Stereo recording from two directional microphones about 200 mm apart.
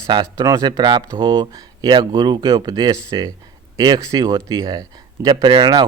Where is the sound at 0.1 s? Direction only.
20° right (ahead or behind).